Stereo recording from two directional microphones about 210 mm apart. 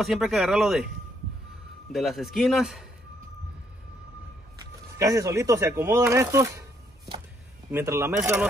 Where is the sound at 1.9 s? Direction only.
Centre (ahead or behind).